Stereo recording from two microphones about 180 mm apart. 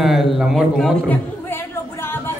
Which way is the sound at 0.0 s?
Centre (ahead or behind).